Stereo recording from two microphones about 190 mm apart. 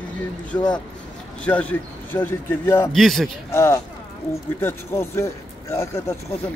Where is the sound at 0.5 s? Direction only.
20° left (ahead or behind).